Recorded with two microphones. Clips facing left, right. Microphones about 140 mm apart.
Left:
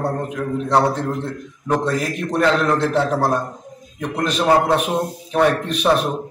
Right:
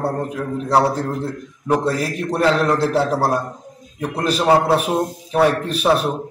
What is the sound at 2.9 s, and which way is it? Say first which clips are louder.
A man's voice: even; 5° right (ahead or behind).